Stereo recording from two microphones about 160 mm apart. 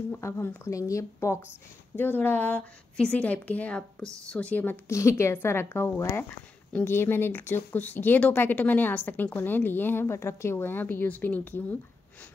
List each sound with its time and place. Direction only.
0.1 s a woman's voice: 15° left (ahead or behind)